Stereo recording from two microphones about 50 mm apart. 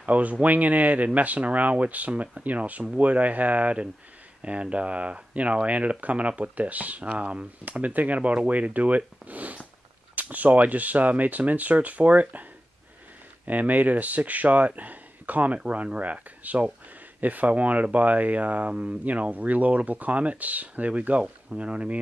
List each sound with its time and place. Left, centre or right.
0.0 s speech: right
13.5 s speech: right